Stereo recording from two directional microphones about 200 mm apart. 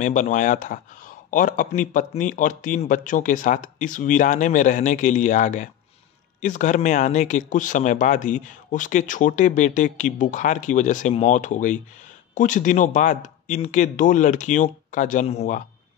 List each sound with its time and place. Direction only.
0.0 s speech: 40° left (ahead or behind)